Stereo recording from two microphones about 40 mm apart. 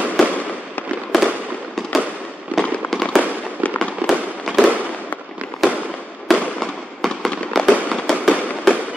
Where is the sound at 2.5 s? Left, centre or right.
Left.